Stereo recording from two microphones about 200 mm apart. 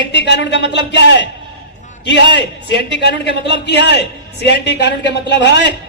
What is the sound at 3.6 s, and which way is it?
A man's voice, 60° left (ahead or behind).